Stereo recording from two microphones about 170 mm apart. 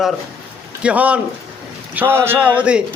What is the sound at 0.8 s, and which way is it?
A man's voice, 10° right (ahead or behind).